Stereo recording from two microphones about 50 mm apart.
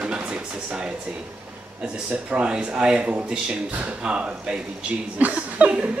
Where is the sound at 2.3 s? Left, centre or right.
Right.